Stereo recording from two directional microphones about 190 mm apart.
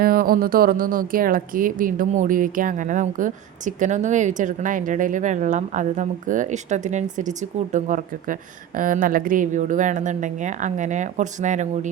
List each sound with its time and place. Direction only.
0.0 s a woman's voice: 50° right (ahead or behind)